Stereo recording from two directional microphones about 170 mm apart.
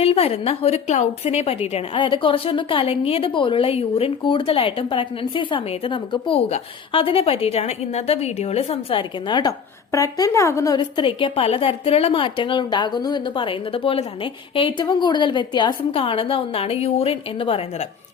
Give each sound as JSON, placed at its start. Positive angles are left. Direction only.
{"t": 0.0, "sound": "a woman's voice", "side_deg": 35}